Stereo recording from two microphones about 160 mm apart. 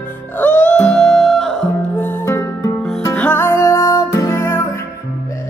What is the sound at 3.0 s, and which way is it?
Music, 10° left (ahead or behind).